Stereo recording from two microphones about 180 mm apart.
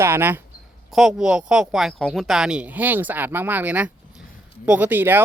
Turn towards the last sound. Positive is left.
turn(degrees=-10)  # may be behind; listen again after turning